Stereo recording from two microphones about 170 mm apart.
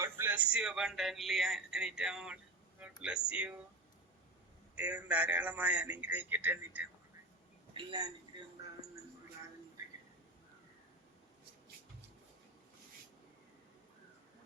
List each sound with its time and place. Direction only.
0.0 s speech: 15° right (ahead or behind)
2.8 s a sound: 5° right (ahead or behind)
3.2 s a man's voice: 5° right (ahead or behind)
4.7 s a man's voice: 10° right (ahead or behind)
7.7 s speech: 30° right (ahead or behind)